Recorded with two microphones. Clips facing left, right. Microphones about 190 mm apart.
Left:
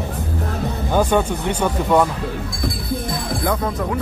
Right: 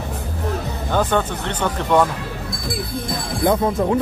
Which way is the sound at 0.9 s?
10° left (ahead or behind).